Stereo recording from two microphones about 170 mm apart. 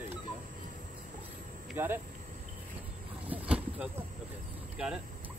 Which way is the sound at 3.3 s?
10° right (ahead or behind).